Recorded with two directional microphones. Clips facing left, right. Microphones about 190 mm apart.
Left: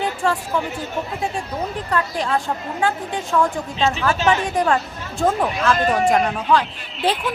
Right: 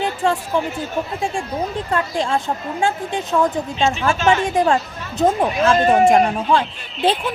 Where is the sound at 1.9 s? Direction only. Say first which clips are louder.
Right 1 dB; 25° right (ahead or behind).